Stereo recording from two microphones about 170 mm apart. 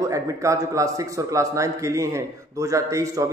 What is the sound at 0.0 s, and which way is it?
A man's voice, 20° right (ahead or behind).